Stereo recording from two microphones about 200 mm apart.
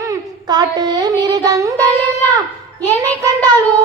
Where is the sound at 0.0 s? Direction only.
20° right (ahead or behind).